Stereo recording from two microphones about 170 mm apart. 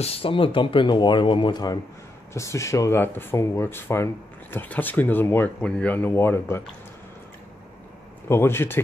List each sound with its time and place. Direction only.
0.0 s speech: 35° left (ahead or behind); by 6.6 s 15° left (ahead or behind)
8.3 s speech: 15° left (ahead or behind)